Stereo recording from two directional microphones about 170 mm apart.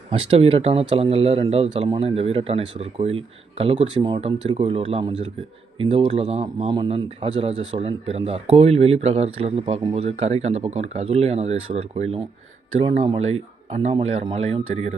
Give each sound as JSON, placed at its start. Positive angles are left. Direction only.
{"t": 0.1, "sound": "a man's voice", "side_deg": -35}
{"t": 6.4, "sound": "a man's voice", "side_deg": -25}